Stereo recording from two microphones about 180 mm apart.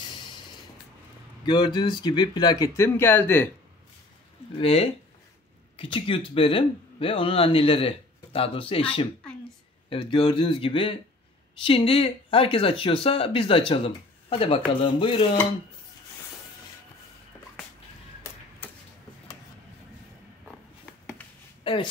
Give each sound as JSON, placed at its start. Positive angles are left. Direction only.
{"t": 1.4, "sound": "speech", "side_deg": 25}
{"t": 4.6, "sound": "speech", "side_deg": 35}